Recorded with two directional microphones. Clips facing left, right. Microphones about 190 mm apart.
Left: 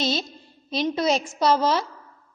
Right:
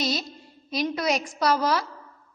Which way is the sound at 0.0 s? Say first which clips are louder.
Left 2 dB; 25° left (ahead or behind).